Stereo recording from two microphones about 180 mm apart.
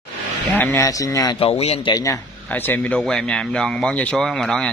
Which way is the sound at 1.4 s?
35° left (ahead or behind).